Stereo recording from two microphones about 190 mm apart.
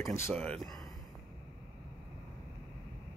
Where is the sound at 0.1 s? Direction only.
10° left (ahead or behind).